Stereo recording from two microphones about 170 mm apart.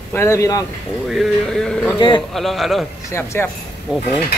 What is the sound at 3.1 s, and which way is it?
Speech, 15° left (ahead or behind).